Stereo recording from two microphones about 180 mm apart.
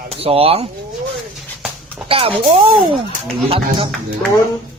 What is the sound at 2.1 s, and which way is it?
Speech, 30° right (ahead or behind).